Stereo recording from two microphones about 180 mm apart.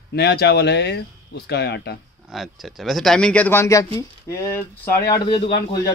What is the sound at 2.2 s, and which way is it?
A man's voice, centre (ahead or behind).